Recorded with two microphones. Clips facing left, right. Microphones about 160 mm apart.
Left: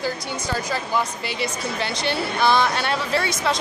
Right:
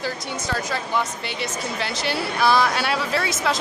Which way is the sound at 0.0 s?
Centre (ahead or behind).